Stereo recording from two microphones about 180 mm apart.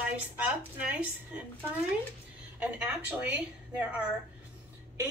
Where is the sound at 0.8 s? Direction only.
5° right (ahead or behind).